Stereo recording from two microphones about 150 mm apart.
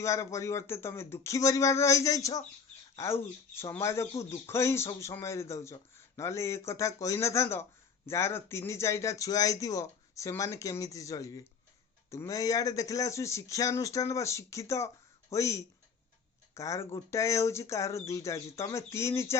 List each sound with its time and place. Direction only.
0.0 s speech: 20° left (ahead or behind)